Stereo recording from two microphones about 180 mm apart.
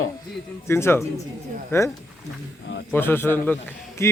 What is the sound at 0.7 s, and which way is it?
Speech, 15° left (ahead or behind).